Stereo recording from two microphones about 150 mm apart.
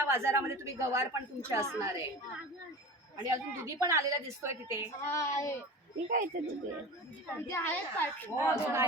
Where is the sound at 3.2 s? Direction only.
20° right (ahead or behind).